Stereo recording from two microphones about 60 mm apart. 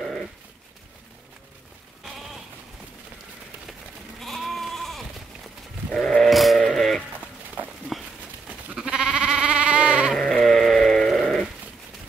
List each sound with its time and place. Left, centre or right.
4.2 s sheep: centre
5.9 s goat: centre
6.6 s a sound: centre
8.7 s sheep: centre
10.1 s sheep: centre
11.1 s sheep: centre